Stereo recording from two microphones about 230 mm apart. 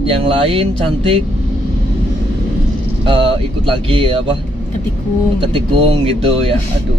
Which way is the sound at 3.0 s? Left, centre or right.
Right.